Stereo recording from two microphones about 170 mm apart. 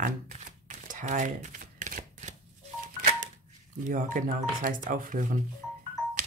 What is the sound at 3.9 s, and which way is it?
Speech, 50° right (ahead or behind).